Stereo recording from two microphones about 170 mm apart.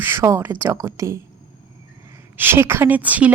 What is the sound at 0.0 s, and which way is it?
A woman's voice, 15° right (ahead or behind).